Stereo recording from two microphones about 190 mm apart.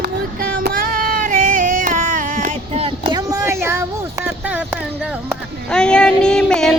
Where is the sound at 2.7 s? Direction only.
30° right (ahead or behind).